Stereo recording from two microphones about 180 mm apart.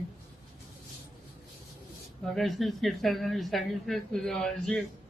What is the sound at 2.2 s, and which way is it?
Speech, centre (ahead or behind).